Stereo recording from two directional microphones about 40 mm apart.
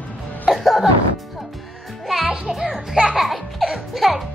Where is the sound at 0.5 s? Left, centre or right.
Centre.